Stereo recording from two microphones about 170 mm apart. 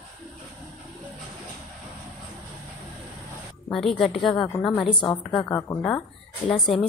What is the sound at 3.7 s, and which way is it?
Speech, centre (ahead or behind).